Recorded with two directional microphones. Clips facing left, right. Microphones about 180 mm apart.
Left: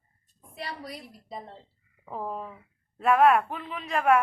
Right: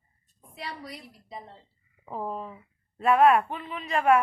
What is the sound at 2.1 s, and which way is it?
Speech, centre (ahead or behind).